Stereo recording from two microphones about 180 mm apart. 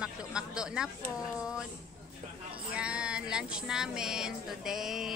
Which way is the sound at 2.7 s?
5° right (ahead or behind).